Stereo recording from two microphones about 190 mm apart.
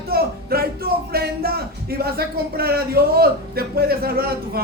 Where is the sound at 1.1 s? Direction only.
55° right (ahead or behind).